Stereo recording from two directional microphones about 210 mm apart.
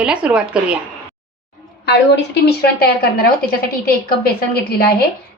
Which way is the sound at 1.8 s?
55° left (ahead or behind).